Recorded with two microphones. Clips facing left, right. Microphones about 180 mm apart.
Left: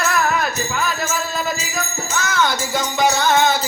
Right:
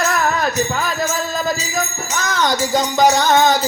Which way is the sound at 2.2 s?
40° right (ahead or behind).